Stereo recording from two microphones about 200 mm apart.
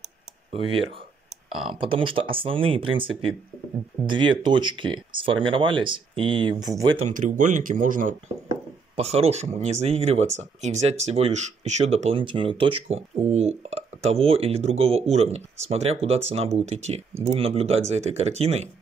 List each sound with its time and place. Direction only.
1.5 s speech: 25° right (ahead or behind)
7.0 s speech: 40° right (ahead or behind)
8.9 s speech: 30° right (ahead or behind)